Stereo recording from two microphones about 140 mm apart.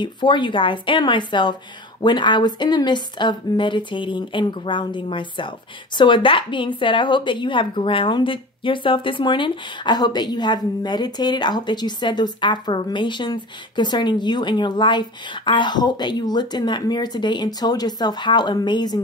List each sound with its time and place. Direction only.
0.0 s a woman's voice: 35° left (ahead or behind)